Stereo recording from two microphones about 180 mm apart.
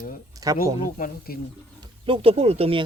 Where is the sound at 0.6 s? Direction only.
50° left (ahead or behind).